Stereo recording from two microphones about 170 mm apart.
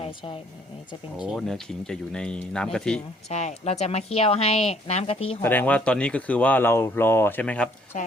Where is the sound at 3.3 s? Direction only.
40° left (ahead or behind).